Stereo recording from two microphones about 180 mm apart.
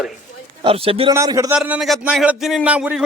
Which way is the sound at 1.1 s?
20° right (ahead or behind).